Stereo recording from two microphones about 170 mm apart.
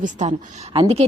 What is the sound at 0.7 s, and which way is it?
Speech, 35° right (ahead or behind).